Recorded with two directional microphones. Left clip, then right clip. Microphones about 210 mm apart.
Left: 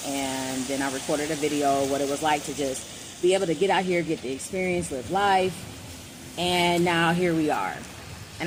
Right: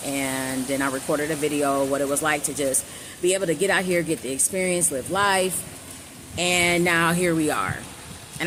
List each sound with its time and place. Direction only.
0.1 s speech: 25° right (ahead or behind)